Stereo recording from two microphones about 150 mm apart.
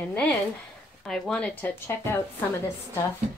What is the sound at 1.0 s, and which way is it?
Speech, 5° left (ahead or behind).